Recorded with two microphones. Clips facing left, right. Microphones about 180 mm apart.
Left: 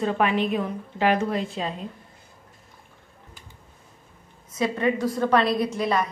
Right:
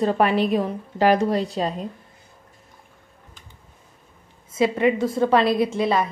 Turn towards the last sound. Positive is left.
turn(degrees=-25)  # may be behind; listen again after turning